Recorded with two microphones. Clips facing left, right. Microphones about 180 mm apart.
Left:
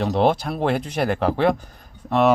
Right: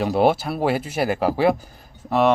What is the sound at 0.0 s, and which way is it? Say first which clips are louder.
Speech: right 1 dB; 5° right (ahead or behind).